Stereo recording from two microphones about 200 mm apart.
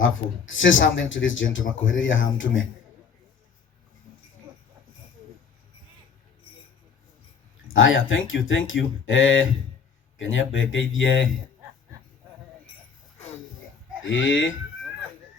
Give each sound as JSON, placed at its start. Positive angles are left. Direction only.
{"t": 0.0, "sound": "speech", "side_deg": 75}
{"t": 7.7, "sound": "speech", "side_deg": 75}
{"t": 14.0, "sound": "speech", "side_deg": 70}